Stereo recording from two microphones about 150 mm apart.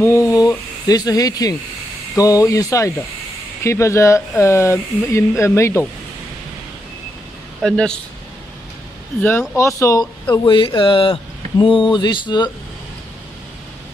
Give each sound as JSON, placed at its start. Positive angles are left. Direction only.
{"t": 0.0, "sound": "speech", "side_deg": 20}
{"t": 7.6, "sound": "speech", "side_deg": 5}
{"t": 9.2, "sound": "speech", "side_deg": 15}
{"t": 10.3, "sound": "speech", "side_deg": 30}